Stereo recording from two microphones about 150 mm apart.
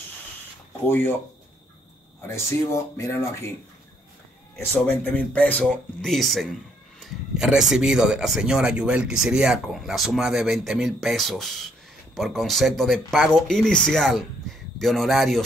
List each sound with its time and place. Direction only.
0.8 s speech: 15° left (ahead or behind)
2.2 s speech: 20° left (ahead or behind)
4.6 s speech: 10° left (ahead or behind)